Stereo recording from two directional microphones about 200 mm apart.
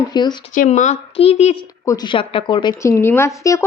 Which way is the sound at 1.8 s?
15° left (ahead or behind).